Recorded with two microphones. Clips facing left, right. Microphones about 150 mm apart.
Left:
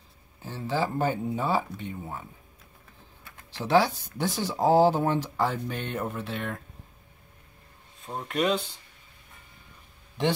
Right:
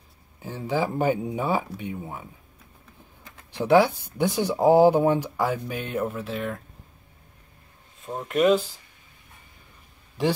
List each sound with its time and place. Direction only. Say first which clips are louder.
0.4 s speech: right 2 dB; 15° right (ahead or behind)
3.3 s a sound: right 7 dB; 15° right (ahead or behind)
4.2 s speech: right 5 dB; 15° right (ahead or behind); by 6.6 s centre (ahead or behind)
8.3 s speech: right 6 dB; 5° right (ahead or behind)